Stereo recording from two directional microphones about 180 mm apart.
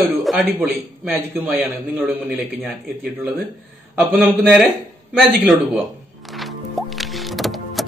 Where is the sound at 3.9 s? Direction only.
Centre (ahead or behind).